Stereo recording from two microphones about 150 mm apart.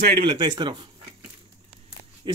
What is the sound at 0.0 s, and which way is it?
Speech, 90° right.